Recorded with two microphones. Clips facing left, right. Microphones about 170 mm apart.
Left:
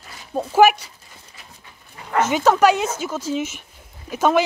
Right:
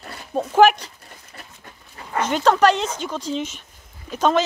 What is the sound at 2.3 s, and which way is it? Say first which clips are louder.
Speech: even; 10° left (ahead or behind).